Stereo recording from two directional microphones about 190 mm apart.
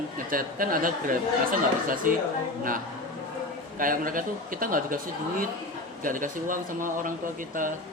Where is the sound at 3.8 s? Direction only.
45° right (ahead or behind).